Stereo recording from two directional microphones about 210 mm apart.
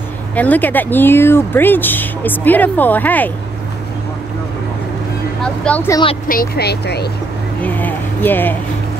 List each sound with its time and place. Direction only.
0.4 s speech: 10° left (ahead or behind)
5.4 s speech: 5° left (ahead or behind)
6.2 s speech: 45° left (ahead or behind)
7.6 s speech: 10° left (ahead or behind)